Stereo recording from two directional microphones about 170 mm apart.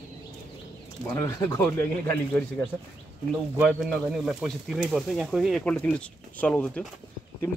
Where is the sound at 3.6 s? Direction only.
Centre (ahead or behind).